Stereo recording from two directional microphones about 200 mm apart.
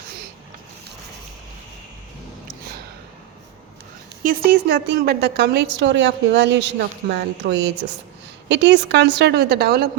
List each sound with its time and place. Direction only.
4.2 s a woman's voice: 45° right (ahead or behind)